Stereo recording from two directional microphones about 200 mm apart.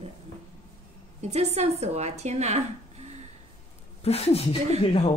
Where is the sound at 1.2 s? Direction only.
35° right (ahead or behind).